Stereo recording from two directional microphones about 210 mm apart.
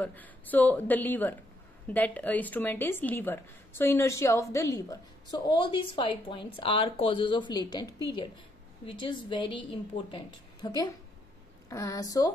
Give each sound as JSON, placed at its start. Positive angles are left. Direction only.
{"t": 0.0, "sound": "a woman's voice", "side_deg": 10}